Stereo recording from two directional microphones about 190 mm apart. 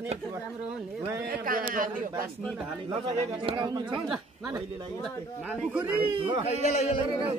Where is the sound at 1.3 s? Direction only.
50° right (ahead or behind).